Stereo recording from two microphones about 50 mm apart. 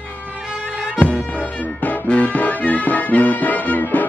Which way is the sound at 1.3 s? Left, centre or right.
Left.